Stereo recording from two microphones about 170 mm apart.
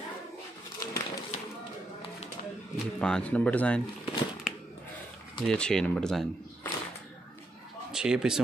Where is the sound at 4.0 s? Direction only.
Centre (ahead or behind).